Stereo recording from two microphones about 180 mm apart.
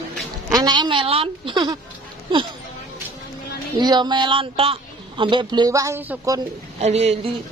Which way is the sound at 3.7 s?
25° right (ahead or behind).